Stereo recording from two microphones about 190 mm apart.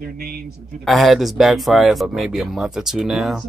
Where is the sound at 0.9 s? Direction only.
Centre (ahead or behind).